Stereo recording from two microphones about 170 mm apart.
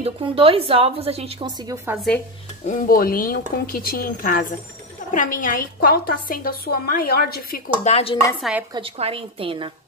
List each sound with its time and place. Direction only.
0.0 s a woman's voice: 30° right (ahead or behind)
2.6 s a woman's voice: 50° left (ahead or behind)
7.8 s speech: 35° left (ahead or behind)
8.4 s speech: 5° right (ahead or behind)
8.7 s a woman's voice: 35° right (ahead or behind)